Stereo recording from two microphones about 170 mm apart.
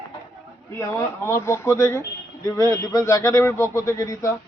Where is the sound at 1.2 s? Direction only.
15° left (ahead or behind).